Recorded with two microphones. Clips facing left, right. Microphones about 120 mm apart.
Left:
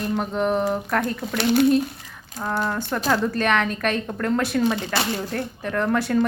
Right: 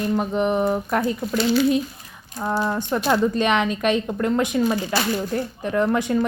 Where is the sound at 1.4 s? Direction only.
60° left (ahead or behind).